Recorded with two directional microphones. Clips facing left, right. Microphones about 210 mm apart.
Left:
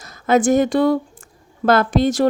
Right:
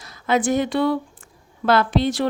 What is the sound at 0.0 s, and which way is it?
Speech, 45° left (ahead or behind).